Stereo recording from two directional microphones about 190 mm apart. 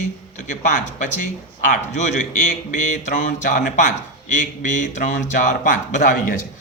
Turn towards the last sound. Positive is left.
turn(degrees=45)  # may be behind; listen again after turning